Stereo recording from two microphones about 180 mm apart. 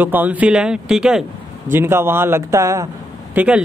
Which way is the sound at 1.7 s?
15° right (ahead or behind).